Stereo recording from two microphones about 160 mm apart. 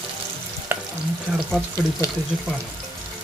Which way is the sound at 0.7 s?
15° right (ahead or behind).